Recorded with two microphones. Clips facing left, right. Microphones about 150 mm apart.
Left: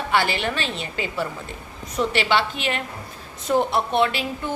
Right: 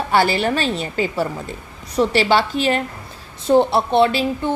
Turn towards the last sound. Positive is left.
turn(degrees=-30)  # may be behind; listen again after turning